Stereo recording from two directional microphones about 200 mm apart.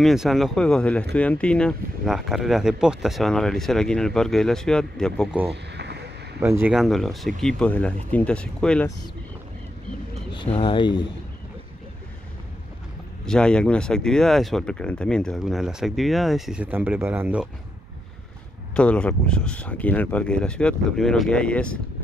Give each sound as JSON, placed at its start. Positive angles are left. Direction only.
{"t": 0.0, "sound": "speech", "side_deg": 0}
{"t": 5.5, "sound": "a sound", "side_deg": -55}
{"t": 6.4, "sound": "speech", "side_deg": -15}
{"t": 6.7, "sound": "speech", "side_deg": 0}
{"t": 10.3, "sound": "speech", "side_deg": 25}
{"t": 13.2, "sound": "speech", "side_deg": 5}
{"t": 18.8, "sound": "speech", "side_deg": 5}